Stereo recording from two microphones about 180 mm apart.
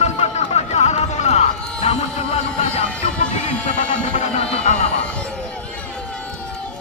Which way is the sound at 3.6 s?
40° left (ahead or behind).